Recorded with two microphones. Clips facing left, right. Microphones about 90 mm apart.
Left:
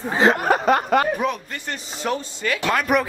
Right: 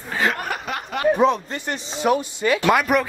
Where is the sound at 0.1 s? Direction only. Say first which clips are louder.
Left 6 dB; 30° left (ahead or behind).